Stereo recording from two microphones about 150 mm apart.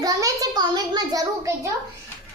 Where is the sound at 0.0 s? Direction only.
25° right (ahead or behind).